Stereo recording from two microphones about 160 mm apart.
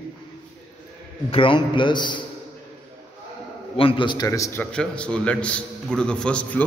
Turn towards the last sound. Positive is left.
turn(degrees=5)  # may be behind; listen again after turning